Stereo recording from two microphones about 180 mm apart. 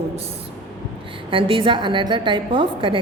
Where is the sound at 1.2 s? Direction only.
30° right (ahead or behind).